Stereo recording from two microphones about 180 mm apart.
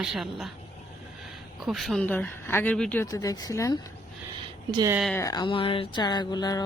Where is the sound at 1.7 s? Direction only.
Centre (ahead or behind).